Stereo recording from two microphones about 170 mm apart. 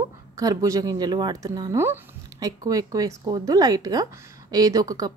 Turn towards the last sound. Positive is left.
turn(degrees=-20)  # may be behind; listen again after turning